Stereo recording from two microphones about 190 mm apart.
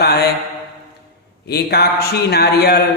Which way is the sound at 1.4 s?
55° left (ahead or behind).